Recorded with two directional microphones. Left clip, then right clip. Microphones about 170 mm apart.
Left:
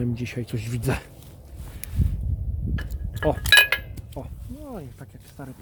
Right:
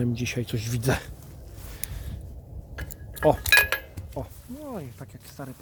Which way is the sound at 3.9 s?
5° right (ahead or behind).